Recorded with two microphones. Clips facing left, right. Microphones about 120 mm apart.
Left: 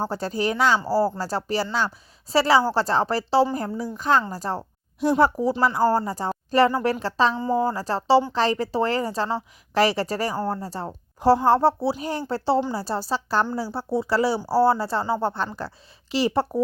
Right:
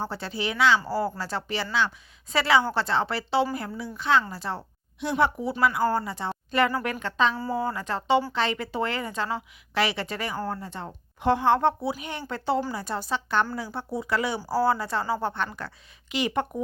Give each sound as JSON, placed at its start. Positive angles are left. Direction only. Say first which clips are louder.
{"t": 0.0, "sound": "a woman's voice", "louder": "left 6 dB", "side_deg": 40}